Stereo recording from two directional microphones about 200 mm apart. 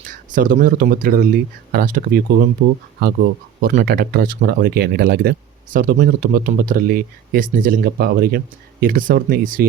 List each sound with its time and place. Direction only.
0.0 s speech: 40° right (ahead or behind)